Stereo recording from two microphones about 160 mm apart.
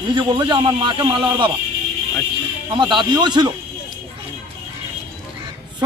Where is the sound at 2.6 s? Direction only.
30° right (ahead or behind).